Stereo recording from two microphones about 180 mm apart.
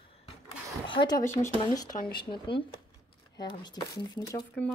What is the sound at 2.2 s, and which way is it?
Speech, 30° left (ahead or behind).